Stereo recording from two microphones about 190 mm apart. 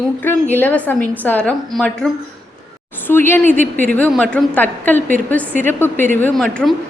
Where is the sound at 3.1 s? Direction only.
10° left (ahead or behind).